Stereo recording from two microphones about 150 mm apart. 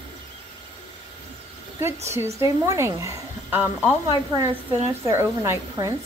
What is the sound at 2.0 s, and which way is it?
Speech, 20° right (ahead or behind).